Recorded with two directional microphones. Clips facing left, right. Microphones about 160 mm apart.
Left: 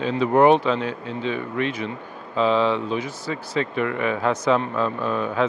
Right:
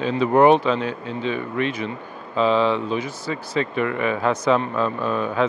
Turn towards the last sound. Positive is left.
turn(degrees=-25)  # may be behind; listen again after turning